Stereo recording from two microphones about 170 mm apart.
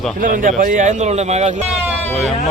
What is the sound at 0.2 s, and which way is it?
A man's voice, 55° right (ahead or behind).